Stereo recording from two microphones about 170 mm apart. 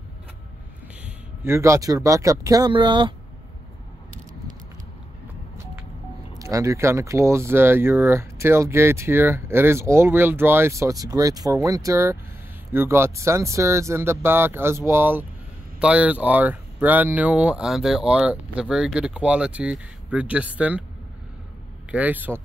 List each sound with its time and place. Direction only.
1.0 s speech: 15° right (ahead or behind)
6.3 s speech: 20° right (ahead or behind)
21.9 s speech: 10° right (ahead or behind)